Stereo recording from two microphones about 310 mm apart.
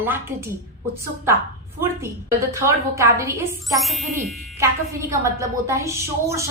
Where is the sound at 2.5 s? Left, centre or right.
Centre.